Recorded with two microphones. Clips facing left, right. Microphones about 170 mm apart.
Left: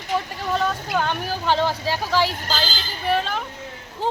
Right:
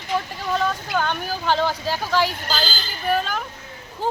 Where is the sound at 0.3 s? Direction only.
Centre (ahead or behind).